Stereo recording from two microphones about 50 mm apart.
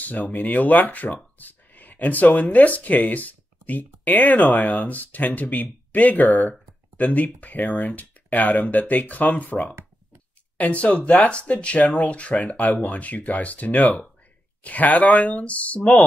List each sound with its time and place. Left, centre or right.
0.3 s speech: left